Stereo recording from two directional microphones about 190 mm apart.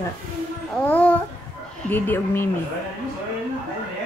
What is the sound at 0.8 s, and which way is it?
Speech, 10° left (ahead or behind).